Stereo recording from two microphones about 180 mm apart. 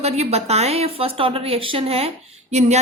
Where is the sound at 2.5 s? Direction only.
40° right (ahead or behind).